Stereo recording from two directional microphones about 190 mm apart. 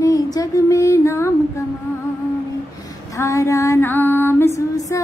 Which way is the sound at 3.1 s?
15° left (ahead or behind).